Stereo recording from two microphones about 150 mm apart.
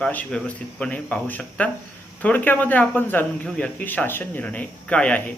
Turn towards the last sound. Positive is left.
turn(degrees=10)  # may be behind; listen again after turning